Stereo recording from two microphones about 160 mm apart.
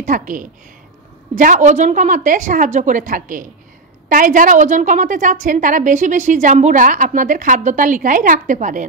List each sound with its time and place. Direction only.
0.0 s a woman's voice: 55° right (ahead or behind)